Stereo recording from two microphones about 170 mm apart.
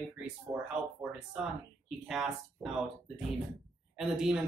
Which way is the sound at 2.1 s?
Centre (ahead or behind).